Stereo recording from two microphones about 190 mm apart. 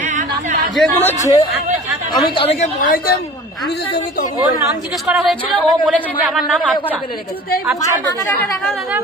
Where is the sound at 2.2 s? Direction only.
25° left (ahead or behind).